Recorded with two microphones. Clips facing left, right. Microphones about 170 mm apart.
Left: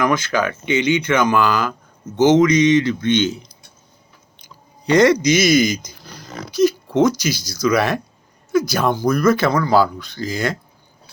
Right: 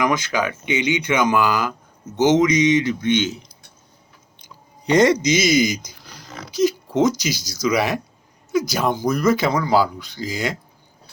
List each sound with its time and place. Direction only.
0.0 s speech: 15° right (ahead or behind)
4.9 s speech: 20° right (ahead or behind)